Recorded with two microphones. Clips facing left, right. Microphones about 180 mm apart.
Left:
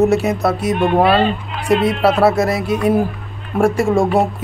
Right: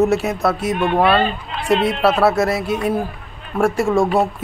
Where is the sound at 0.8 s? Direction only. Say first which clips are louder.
Left 2 dB; 35° left (ahead or behind).